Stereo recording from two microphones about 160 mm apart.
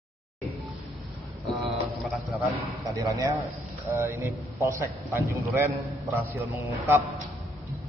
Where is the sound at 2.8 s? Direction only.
20° right (ahead or behind).